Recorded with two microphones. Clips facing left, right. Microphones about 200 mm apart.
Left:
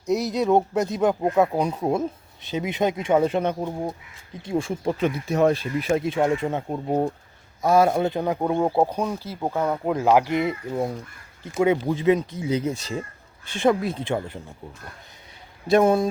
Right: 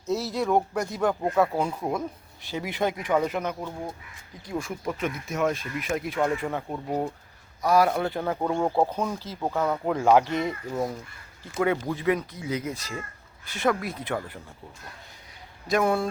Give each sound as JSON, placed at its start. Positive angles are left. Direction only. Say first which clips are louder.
{"t": 0.0, "sound": "speech", "louder": "left 4 dB", "side_deg": 15}
{"t": 15.6, "sound": "speech", "louder": "left 6 dB", "side_deg": 25}